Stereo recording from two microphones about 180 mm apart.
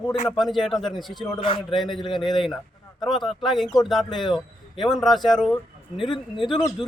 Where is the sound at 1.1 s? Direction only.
25° left (ahead or behind).